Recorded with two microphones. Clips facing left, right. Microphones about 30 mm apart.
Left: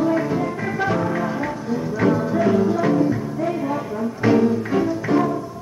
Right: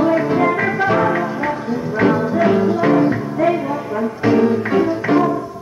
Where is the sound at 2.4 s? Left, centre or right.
Right.